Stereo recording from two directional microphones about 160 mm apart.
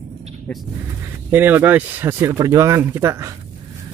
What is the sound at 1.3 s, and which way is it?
Speech, 10° right (ahead or behind).